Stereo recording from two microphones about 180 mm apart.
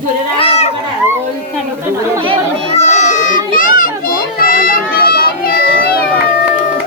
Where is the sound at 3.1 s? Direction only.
45° left (ahead or behind).